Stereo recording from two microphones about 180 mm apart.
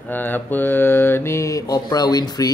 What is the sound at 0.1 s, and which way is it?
Mantra, 10° left (ahead or behind).